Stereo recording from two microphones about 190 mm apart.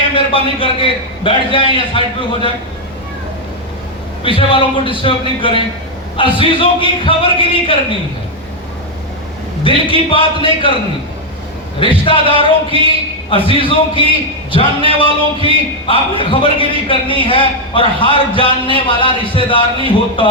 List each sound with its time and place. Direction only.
0.1 s a man's voice: 25° left (ahead or behind)
4.2 s a man's voice: 25° left (ahead or behind)
9.6 s a man's voice: 25° left (ahead or behind)
11.8 s a man's voice: 25° left (ahead or behind)